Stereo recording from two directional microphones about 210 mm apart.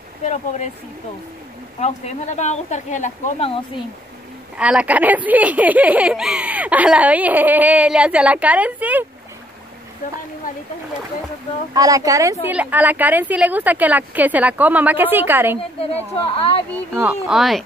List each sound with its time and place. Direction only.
0.2 s speech: 35° left (ahead or behind)
1.8 s speech: 30° left (ahead or behind)
4.6 s speech: 5° right (ahead or behind)
10.5 s speech: 40° left (ahead or behind)
11.7 s speech: 15° right (ahead or behind)
15.5 s speech: 25° left (ahead or behind)
16.9 s speech: 5° right (ahead or behind)